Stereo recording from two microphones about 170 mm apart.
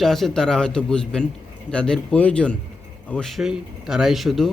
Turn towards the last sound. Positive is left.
turn(degrees=0)  # may be behind; listen again after turning